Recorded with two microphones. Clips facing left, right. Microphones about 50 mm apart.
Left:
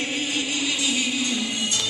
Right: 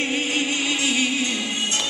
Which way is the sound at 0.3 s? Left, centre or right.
Right.